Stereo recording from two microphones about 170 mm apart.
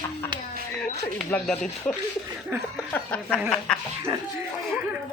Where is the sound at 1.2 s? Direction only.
5° left (ahead or behind).